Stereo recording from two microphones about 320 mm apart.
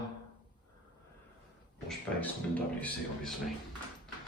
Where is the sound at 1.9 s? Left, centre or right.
Centre.